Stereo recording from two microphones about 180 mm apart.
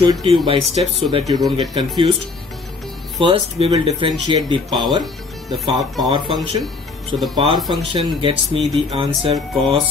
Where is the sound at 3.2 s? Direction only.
30° right (ahead or behind).